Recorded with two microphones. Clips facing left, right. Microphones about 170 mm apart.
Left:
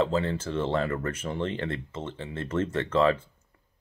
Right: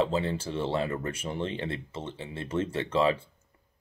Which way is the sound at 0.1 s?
15° right (ahead or behind).